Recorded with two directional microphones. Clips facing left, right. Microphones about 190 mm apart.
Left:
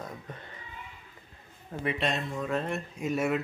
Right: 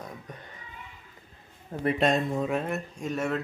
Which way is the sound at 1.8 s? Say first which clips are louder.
Right 6 dB; 45° right (ahead or behind).